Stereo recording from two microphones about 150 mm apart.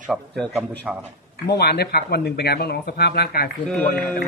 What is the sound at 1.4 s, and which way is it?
Speech, 90° left.